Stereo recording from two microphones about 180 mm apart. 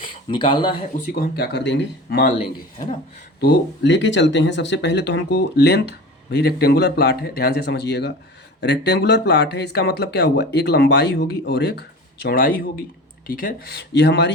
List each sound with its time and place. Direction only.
0.0 s speech: 30° left (ahead or behind)
1.1 s speech: 60° left (ahead or behind)
3.4 s speech: 75° left (ahead or behind)